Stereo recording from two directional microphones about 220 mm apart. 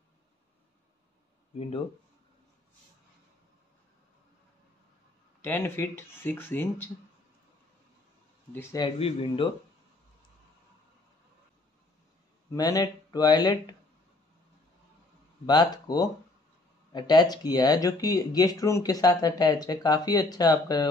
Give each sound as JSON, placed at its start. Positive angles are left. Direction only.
{"t": 5.4, "sound": "speech", "side_deg": 10}
{"t": 8.5, "sound": "speech", "side_deg": 20}
{"t": 12.5, "sound": "speech", "side_deg": 15}
{"t": 15.4, "sound": "speech", "side_deg": 20}